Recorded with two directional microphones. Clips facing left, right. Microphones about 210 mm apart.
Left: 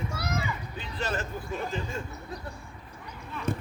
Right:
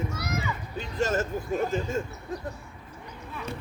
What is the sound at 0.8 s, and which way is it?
Speech, 45° right (ahead or behind).